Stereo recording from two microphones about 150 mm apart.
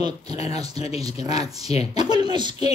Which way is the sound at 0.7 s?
45° left (ahead or behind).